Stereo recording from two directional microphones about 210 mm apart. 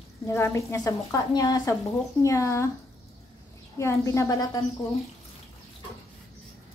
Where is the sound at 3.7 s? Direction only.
15° left (ahead or behind).